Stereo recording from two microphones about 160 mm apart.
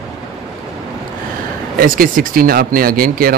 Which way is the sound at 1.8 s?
60° right (ahead or behind).